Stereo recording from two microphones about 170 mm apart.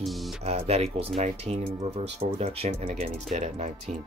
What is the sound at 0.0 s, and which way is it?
Music, centre (ahead or behind).